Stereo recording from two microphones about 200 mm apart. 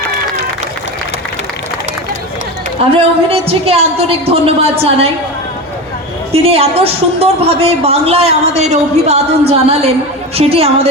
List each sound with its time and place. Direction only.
2.9 s a woman's voice: 30° right (ahead or behind)
6.3 s a woman's voice: 30° right (ahead or behind)